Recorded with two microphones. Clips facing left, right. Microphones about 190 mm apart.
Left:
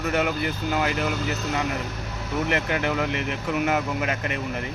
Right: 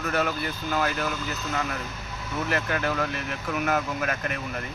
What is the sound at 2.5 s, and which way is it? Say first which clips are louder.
Speech: left 1 dB; 20° left (ahead or behind).